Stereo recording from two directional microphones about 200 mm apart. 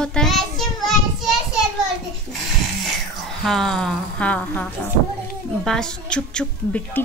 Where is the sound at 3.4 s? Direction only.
Centre (ahead or behind).